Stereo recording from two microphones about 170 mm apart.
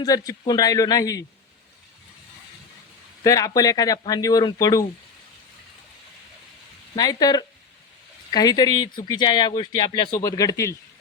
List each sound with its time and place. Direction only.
0.0 s speech: 20° left (ahead or behind)
3.2 s speech: 20° left (ahead or behind)
6.9 s speech: 20° left (ahead or behind)